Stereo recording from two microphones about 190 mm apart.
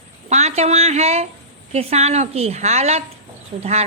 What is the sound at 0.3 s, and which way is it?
A woman's voice, 35° right (ahead or behind).